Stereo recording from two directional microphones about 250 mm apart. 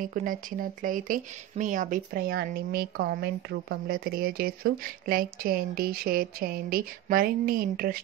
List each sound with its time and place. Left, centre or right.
0.0 s speech: right